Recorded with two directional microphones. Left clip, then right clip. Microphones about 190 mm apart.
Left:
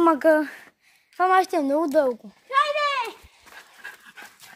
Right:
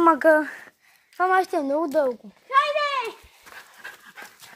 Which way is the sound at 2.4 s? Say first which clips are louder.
Right 1 dB; 10° left (ahead or behind).